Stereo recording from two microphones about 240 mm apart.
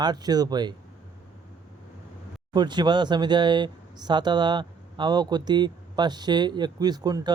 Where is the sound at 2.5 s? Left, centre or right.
Centre.